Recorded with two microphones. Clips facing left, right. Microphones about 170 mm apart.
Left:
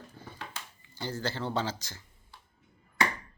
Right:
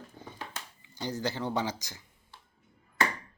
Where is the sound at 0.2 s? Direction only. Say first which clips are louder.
Right 1 dB; 20° right (ahead or behind).